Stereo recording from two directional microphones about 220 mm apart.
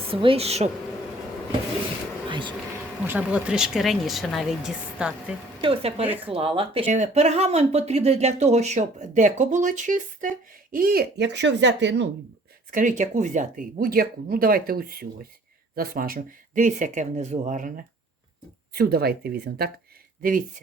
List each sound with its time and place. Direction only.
0.1 s speech: 25° right (ahead or behind)
3.1 s speech: 5° right (ahead or behind)
5.6 s speech: 25° right (ahead or behind); by 12.0 s 55° right (ahead or behind)
12.7 s speech: 35° right (ahead or behind)